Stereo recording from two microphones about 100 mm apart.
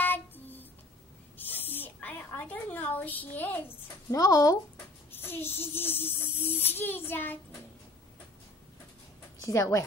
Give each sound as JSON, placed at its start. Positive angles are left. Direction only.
{"t": 0.0, "sound": "a sound", "side_deg": 20}
{"t": 4.2, "sound": "speech", "side_deg": 35}
{"t": 5.1, "sound": "a child's voice", "side_deg": 20}
{"t": 9.4, "sound": "a woman's voice", "side_deg": 30}